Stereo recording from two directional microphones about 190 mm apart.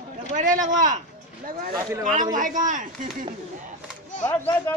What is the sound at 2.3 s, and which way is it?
Speech, 45° right (ahead or behind).